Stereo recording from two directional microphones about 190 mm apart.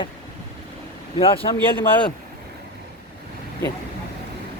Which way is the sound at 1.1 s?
30° left (ahead or behind).